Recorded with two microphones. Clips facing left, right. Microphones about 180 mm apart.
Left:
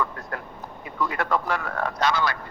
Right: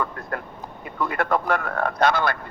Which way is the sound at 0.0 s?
50° right (ahead or behind).